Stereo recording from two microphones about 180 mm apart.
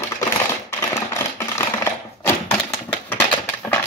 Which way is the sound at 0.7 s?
15° left (ahead or behind).